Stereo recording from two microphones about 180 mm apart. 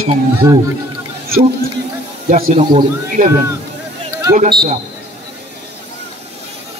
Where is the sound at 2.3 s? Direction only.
45° right (ahead or behind).